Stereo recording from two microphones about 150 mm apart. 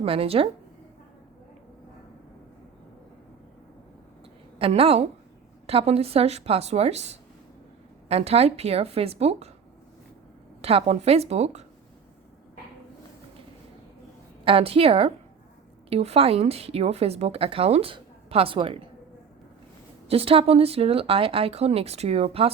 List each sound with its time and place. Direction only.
0.0 s speech: 40° right (ahead or behind)
4.5 s speech: 40° right (ahead or behind)
10.6 s speech: 40° right (ahead or behind)
14.4 s speech: 40° right (ahead or behind)
20.1 s speech: 40° right (ahead or behind)